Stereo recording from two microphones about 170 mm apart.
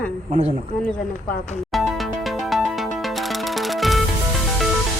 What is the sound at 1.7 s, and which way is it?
Music, centre (ahead or behind).